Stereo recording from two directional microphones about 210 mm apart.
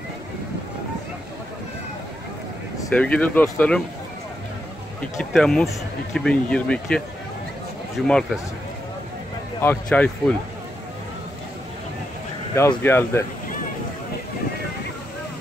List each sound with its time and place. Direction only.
2.8 s speech: 5° left (ahead or behind)
5.1 s speech: centre (ahead or behind)
8.1 s speech: centre (ahead or behind)
9.6 s speech: 10° left (ahead or behind)
12.5 s speech: 10° left (ahead or behind)